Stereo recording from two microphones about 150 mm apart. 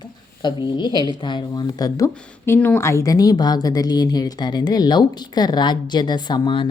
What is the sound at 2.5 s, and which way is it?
Speech, 15° left (ahead or behind).